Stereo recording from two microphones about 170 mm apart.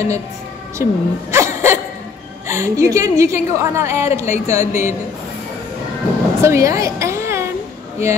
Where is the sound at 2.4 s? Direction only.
15° right (ahead or behind).